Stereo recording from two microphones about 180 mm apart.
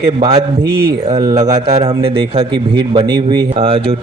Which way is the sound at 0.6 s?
60° right (ahead or behind).